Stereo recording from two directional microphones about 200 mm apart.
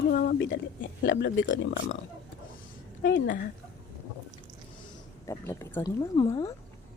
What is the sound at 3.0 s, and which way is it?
Speech, 60° left (ahead or behind).